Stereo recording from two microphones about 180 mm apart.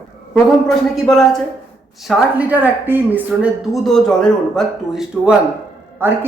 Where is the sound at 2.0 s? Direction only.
10° right (ahead or behind).